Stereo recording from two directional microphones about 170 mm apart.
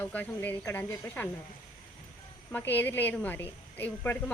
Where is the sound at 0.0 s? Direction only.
10° left (ahead or behind).